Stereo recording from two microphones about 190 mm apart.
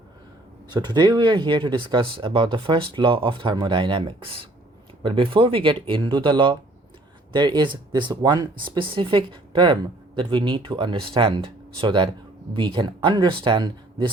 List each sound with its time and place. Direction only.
0.7 s speech: 20° right (ahead or behind)